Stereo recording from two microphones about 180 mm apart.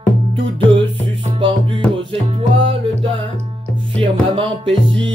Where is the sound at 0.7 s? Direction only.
25° right (ahead or behind).